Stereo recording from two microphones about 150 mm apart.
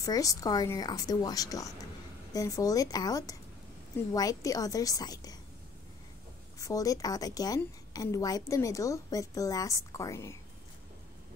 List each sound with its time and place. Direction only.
0.0 s a woman's voice: 20° left (ahead or behind)
6.6 s a woman's voice: 25° left (ahead or behind)